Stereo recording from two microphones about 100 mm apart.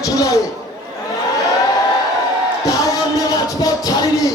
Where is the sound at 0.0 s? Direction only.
35° left (ahead or behind).